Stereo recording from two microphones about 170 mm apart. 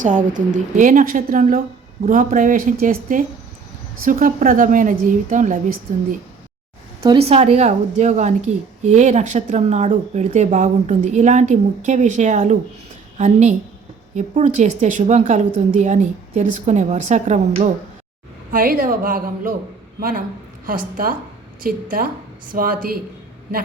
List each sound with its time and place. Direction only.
0.0 s a woman's voice: 50° right (ahead or behind)
7.2 s a woman's voice: 35° right (ahead or behind)
18.5 s speech: 55° right (ahead or behind)